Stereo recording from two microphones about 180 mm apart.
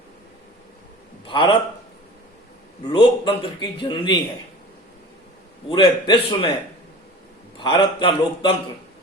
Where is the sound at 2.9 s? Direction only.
30° left (ahead or behind).